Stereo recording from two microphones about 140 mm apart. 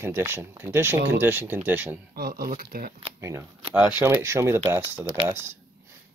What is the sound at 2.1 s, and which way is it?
Speech, 90° right.